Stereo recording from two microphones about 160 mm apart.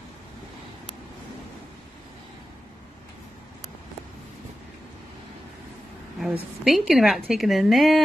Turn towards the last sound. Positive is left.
turn(degrees=0)  # may be behind; listen again after turning